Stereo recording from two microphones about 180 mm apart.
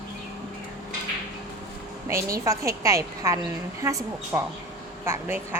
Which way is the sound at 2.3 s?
15° right (ahead or behind).